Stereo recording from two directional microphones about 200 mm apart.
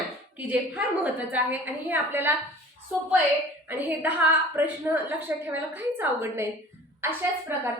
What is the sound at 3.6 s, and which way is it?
A woman's voice, 10° right (ahead or behind).